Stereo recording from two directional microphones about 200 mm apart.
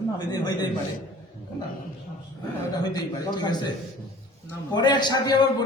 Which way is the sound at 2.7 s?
20° left (ahead or behind).